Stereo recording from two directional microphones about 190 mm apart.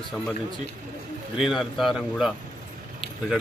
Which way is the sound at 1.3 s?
Centre (ahead or behind).